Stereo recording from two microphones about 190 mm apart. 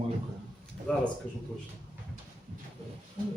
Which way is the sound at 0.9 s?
5° left (ahead or behind).